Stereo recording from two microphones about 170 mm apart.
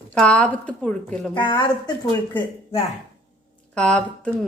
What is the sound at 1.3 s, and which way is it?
Speech, 25° left (ahead or behind).